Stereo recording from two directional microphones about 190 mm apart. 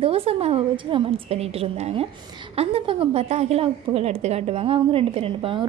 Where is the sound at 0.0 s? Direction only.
30° right (ahead or behind).